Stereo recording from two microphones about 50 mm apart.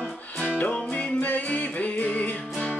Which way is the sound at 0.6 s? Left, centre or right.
Left.